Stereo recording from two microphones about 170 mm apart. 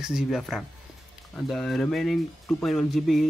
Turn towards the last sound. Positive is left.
turn(degrees=0)  # may be behind; listen again after turning